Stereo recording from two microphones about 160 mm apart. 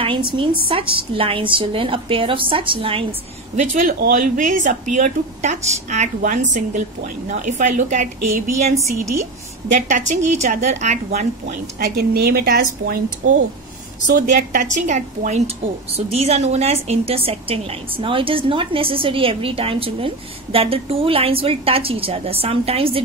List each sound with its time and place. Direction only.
0.0 s a woman's voice: 30° right (ahead or behind)
3.5 s speech: 55° right (ahead or behind)
9.7 s speech: 50° right (ahead or behind)
12.0 s speech: 75° right (ahead or behind)
14.0 s a woman's voice: 55° right (ahead or behind); by 23.0 s 35° right (ahead or behind)